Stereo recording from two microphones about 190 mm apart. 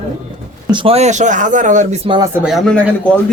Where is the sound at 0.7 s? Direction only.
25° right (ahead or behind).